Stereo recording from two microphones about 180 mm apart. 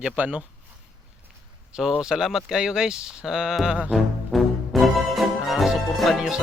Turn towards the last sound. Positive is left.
turn(degrees=0)  # may be behind; listen again after turning